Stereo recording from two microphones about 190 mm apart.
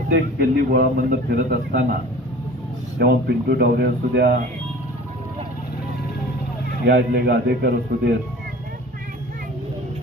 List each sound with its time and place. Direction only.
0.1 s a man's voice: 55° right (ahead or behind)
3.0 s speech: 60° right (ahead or behind)
6.8 s speech: 60° right (ahead or behind)